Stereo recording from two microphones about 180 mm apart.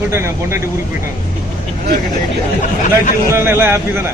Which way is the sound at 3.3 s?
15° right (ahead or behind).